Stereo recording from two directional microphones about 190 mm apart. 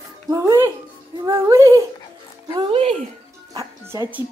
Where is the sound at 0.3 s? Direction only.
15° right (ahead or behind).